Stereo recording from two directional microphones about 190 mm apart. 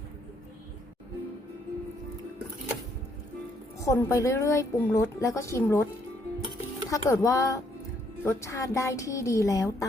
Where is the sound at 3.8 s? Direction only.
15° left (ahead or behind).